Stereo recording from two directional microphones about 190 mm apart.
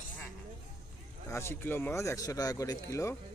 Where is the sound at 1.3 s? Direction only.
15° left (ahead or behind).